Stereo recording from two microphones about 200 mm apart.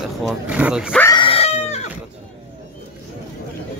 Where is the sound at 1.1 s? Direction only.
25° left (ahead or behind).